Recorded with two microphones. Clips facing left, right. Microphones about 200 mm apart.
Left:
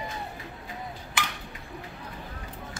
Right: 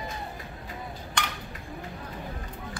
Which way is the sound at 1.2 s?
5° left (ahead or behind).